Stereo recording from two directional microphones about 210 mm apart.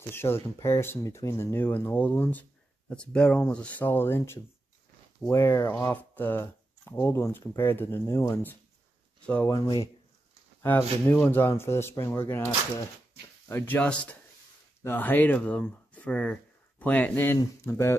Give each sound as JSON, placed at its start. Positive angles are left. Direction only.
{"t": 0.1, "sound": "speech", "side_deg": 10}
{"t": 9.5, "sound": "speech", "side_deg": 20}
{"t": 13.5, "sound": "speech", "side_deg": 10}